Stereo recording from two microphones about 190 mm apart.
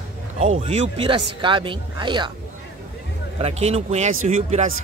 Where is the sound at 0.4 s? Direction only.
35° right (ahead or behind).